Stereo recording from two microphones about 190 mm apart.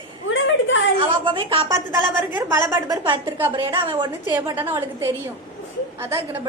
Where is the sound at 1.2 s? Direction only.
25° right (ahead or behind).